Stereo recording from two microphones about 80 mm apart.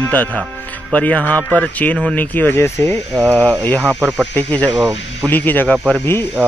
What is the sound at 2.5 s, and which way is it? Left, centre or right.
Speech, left.